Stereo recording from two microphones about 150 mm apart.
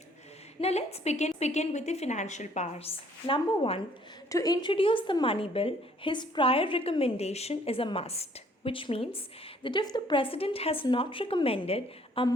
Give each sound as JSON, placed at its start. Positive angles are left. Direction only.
{"t": 0.6, "sound": "a woman's voice", "side_deg": 45}
{"t": 4.3, "sound": "a woman's voice", "side_deg": 25}